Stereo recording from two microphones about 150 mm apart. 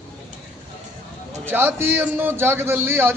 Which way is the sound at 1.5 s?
15° right (ahead or behind).